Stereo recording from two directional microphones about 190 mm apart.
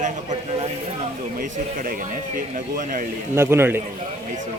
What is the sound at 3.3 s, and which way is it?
Speech, 15° right (ahead or behind).